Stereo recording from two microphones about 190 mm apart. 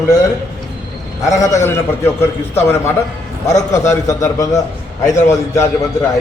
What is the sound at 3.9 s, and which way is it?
A man's voice, 15° left (ahead or behind).